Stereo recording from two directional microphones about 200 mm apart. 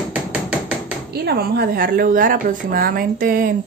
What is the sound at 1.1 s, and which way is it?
Speech, 50° right (ahead or behind).